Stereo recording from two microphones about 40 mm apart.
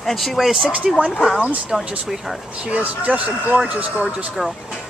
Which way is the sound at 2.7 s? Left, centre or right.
Right.